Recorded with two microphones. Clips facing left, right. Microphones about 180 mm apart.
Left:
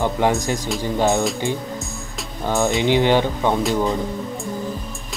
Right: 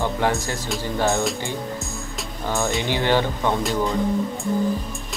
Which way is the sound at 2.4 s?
20° left (ahead or behind).